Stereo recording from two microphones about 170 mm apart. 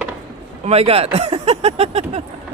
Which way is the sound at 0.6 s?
35° right (ahead or behind).